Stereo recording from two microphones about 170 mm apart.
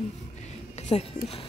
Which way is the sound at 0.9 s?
35° left (ahead or behind).